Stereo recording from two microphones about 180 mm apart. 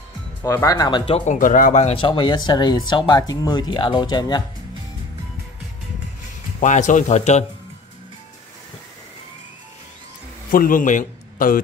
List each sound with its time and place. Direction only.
0.4 s speech: 15° left (ahead or behind)
6.6 s speech: 45° left (ahead or behind)
10.5 s a man's voice: 50° left (ahead or behind)